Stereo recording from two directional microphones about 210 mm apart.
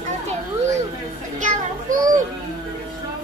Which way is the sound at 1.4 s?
40° right (ahead or behind).